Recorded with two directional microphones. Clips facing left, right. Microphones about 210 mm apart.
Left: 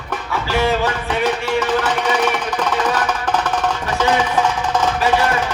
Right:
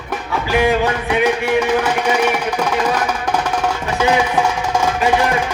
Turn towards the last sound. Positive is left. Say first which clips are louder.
# right 1 dB
turn(degrees=-10)  # may be behind; listen again after turning